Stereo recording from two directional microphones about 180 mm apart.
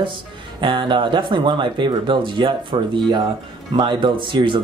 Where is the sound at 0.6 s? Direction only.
25° right (ahead or behind).